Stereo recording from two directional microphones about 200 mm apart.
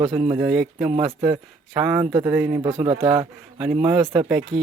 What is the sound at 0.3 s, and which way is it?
A man's voice, 10° right (ahead or behind).